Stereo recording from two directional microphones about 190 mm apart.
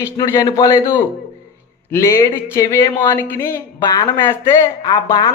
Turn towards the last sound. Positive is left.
turn(degrees=20)  # may be behind; listen again after turning